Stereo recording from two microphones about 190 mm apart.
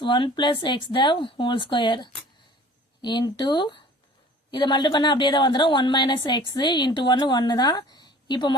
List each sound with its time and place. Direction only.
0.0 s a woman's voice: 25° left (ahead or behind)